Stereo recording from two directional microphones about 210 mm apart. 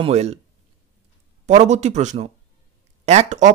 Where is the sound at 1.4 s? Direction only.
30° right (ahead or behind).